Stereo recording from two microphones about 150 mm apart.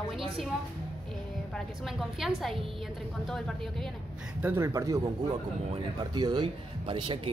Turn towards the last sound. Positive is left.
turn(degrees=-35)  # may be behind; listen again after turning